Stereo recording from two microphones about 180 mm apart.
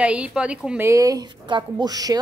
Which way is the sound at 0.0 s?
5° right (ahead or behind).